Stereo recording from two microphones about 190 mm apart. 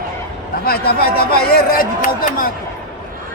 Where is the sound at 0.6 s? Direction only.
55° left (ahead or behind).